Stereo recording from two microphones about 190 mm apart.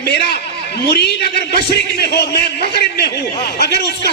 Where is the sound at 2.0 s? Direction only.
60° left (ahead or behind).